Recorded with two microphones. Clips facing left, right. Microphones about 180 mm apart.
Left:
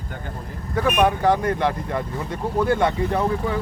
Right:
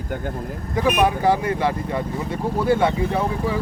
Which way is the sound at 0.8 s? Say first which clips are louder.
Even; 10° right (ahead or behind).